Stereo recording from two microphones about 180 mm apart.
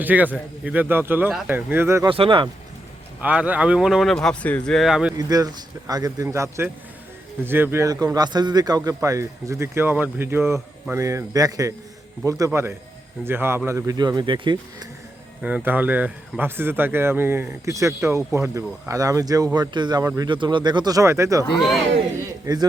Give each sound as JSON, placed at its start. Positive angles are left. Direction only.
{"t": 0.0, "sound": "a man's voice", "side_deg": -10}
{"t": 2.0, "sound": "speech", "side_deg": -30}
{"t": 3.2, "sound": "speech", "side_deg": -10}
{"t": 5.1, "sound": "a man's voice", "side_deg": -20}
{"t": 15.4, "sound": "a man's voice", "side_deg": -5}